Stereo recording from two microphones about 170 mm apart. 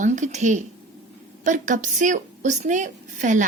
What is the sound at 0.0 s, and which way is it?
A woman's voice, 45° right (ahead or behind).